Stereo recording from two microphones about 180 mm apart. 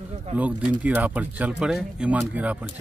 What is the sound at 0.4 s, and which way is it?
Speech, 5° right (ahead or behind).